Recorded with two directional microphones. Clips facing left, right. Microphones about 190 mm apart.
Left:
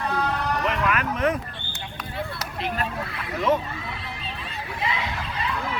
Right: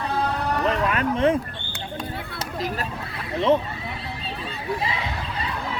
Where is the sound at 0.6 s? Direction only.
30° right (ahead or behind).